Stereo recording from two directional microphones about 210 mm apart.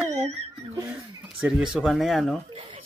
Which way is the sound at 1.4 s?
5° right (ahead or behind).